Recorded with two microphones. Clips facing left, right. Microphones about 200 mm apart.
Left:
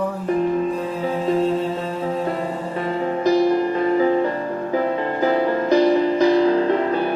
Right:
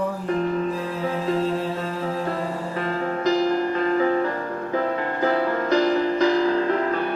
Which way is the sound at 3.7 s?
20° left (ahead or behind).